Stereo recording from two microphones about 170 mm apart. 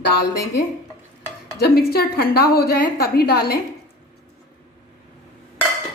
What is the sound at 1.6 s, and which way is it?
A woman's voice, 65° left (ahead or behind).